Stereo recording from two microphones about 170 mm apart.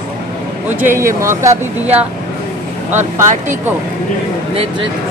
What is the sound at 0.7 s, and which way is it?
Speech, 10° right (ahead or behind).